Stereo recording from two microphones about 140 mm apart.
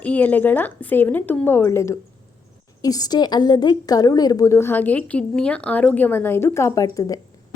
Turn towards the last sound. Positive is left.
turn(degrees=25)  # may be behind; listen again after turning